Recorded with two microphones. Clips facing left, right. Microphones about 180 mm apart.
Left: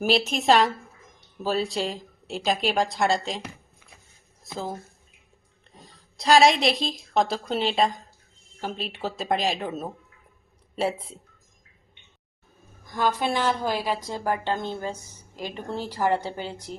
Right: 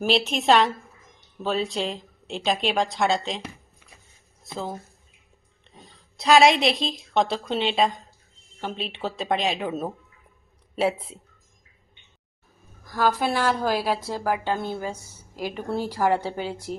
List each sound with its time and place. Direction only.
0.0 s speech: centre (ahead or behind)
4.4 s speech: centre (ahead or behind)
6.0 s speech: centre (ahead or behind)
10.8 s speech: centre (ahead or behind)
12.9 s a woman's voice: 5° right (ahead or behind)